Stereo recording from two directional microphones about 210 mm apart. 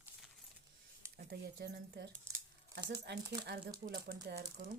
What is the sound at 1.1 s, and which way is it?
Speech, 50° right (ahead or behind).